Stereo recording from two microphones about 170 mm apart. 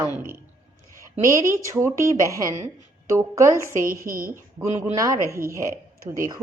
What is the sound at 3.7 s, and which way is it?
Speech, 50° right (ahead or behind).